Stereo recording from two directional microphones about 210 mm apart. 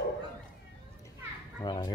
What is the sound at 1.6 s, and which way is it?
Speech, 20° left (ahead or behind).